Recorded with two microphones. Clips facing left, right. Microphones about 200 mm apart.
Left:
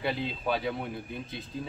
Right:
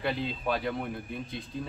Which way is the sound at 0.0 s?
Centre (ahead or behind).